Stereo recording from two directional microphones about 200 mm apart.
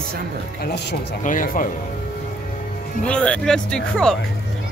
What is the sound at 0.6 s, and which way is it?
Speech, 55° left (ahead or behind).